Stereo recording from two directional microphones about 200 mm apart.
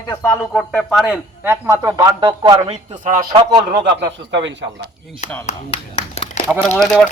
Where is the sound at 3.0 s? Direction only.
40° right (ahead or behind).